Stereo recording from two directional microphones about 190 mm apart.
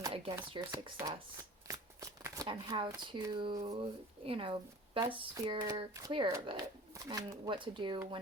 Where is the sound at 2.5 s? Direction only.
25° right (ahead or behind).